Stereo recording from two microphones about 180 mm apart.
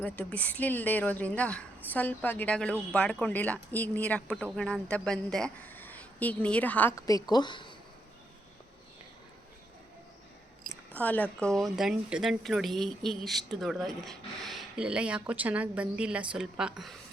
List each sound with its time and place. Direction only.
0.0 s speech: 10° left (ahead or behind); by 7.7 s 25° left (ahead or behind)
10.9 s speech: 10° left (ahead or behind)